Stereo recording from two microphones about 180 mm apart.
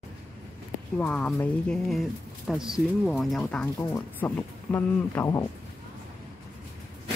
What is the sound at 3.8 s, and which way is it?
Speech, 15° left (ahead or behind).